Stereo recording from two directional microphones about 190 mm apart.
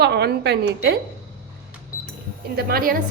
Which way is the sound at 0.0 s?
60° right (ahead or behind).